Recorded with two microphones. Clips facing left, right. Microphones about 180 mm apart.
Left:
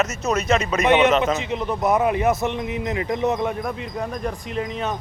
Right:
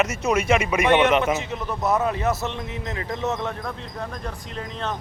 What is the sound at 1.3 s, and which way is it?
A man's voice, 15° left (ahead or behind).